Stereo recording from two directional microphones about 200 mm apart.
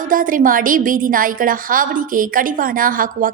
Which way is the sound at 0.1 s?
40° right (ahead or behind).